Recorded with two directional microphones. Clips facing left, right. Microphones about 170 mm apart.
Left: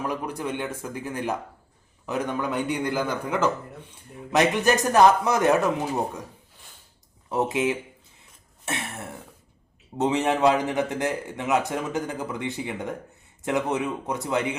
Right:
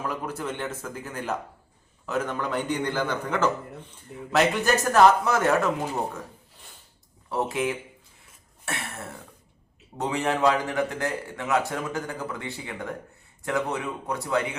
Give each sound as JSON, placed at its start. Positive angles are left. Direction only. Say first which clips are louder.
{"t": 0.0, "sound": "a man's voice", "louder": "left 2 dB", "side_deg": 15}
{"t": 7.3, "sound": "a man's voice", "louder": "left 3 dB", "side_deg": 20}
{"t": 8.6, "sound": "cough", "louder": "left 2 dB", "side_deg": 20}
{"t": 10.0, "sound": "a man's voice", "louder": "left 3 dB", "side_deg": 20}